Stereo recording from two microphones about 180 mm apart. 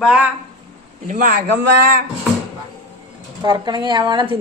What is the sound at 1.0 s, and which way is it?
Speech, 50° right (ahead or behind).